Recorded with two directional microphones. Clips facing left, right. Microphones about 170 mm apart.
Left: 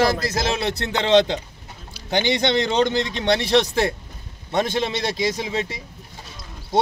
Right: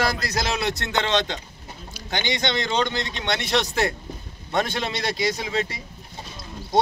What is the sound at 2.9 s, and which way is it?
A man's voice, 30° left (ahead or behind).